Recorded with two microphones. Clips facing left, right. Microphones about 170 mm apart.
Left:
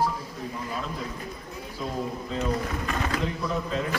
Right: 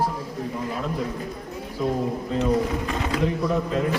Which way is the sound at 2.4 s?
20° right (ahead or behind).